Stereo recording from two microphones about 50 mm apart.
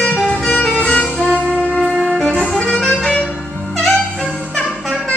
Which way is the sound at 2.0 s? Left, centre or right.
Centre.